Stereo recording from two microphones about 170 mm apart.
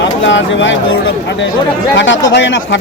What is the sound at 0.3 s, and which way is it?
Speech, 90° left.